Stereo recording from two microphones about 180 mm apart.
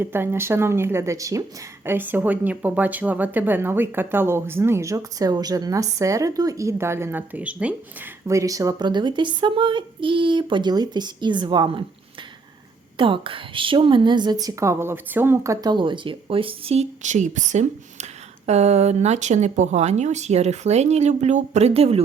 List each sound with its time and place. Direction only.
0.0 s speech: 10° right (ahead or behind)
8.3 s a woman's voice: 20° right (ahead or behind)
13.0 s a woman's voice: 30° right (ahead or behind)